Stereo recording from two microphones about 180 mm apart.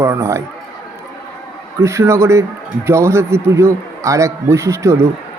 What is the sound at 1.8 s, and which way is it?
Speech, 15° right (ahead or behind).